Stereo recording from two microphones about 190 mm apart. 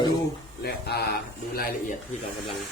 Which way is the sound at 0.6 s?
55° left (ahead or behind).